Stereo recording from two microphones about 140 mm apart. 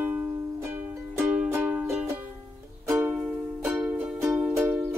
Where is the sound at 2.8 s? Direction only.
15° right (ahead or behind).